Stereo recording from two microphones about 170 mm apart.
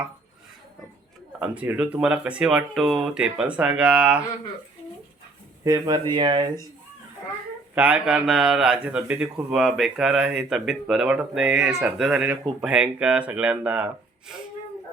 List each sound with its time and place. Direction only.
1.4 s speech: 10° right (ahead or behind)
5.6 s speech: 20° right (ahead or behind)
7.8 s speech: 10° right (ahead or behind)